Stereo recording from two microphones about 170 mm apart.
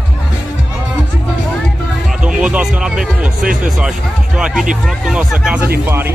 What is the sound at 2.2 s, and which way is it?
Music, 5° right (ahead or behind).